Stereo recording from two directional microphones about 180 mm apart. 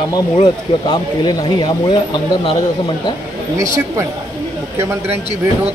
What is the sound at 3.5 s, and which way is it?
Speech, 15° right (ahead or behind).